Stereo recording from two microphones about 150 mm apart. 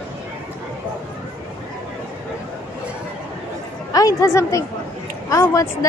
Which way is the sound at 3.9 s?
20° left (ahead or behind).